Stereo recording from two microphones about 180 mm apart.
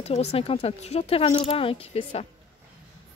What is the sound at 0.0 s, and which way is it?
Speech, 35° left (ahead or behind).